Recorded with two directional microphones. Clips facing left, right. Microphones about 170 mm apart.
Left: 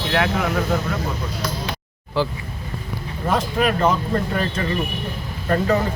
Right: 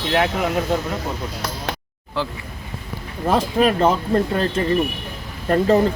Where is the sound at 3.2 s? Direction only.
30° right (ahead or behind).